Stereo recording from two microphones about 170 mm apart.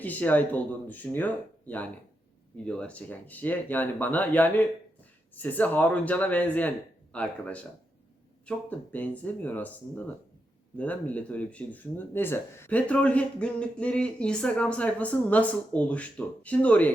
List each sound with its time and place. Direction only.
0.0 s speech: 10° left (ahead or behind)